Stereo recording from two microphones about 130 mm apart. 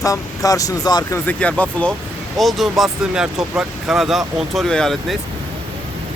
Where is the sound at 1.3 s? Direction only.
10° left (ahead or behind).